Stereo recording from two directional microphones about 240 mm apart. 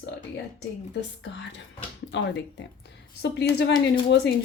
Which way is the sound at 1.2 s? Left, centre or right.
Left.